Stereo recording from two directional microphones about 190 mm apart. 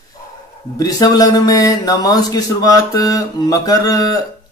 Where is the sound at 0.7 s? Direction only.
20° left (ahead or behind).